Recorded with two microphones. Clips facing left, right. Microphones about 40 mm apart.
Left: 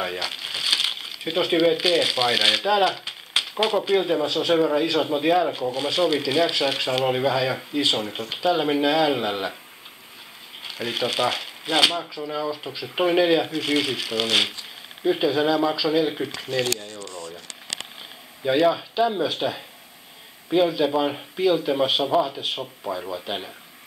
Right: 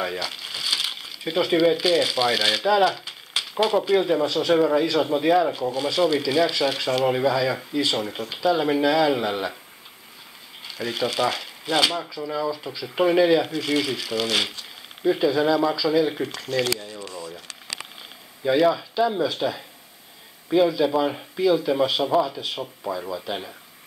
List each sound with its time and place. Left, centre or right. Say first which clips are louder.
0.2 s speech: left 2 dB; left
3.9 s speech: right 1 dB; centre
10.6 s speech: even; left; by 16.6 s centre
18.5 s speech: even; centre